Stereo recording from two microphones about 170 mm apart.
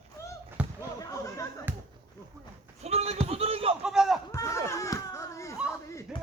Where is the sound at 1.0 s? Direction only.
20° left (ahead or behind).